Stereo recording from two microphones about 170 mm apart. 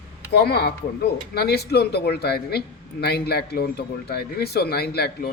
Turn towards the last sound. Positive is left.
turn(degrees=70)  # may be behind; listen again after turning